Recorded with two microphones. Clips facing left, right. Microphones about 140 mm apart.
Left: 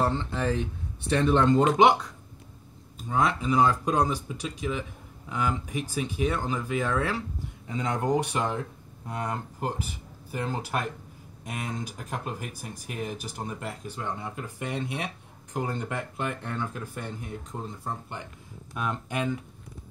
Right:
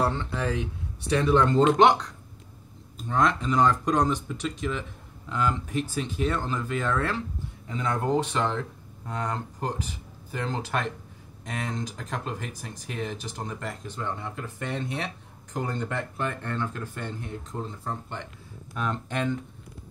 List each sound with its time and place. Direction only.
0.0 s speech: 30° left (ahead or behind)
1.4 s speech: 10° left (ahead or behind)
3.1 s speech: 10° left (ahead or behind)